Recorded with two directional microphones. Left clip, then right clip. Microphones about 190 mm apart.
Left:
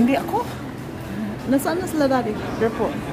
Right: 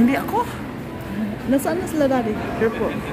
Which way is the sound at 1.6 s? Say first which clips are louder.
Right 1 dB; 5° left (ahead or behind).